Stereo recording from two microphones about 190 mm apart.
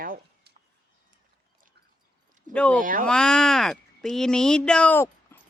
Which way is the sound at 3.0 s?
5° left (ahead or behind).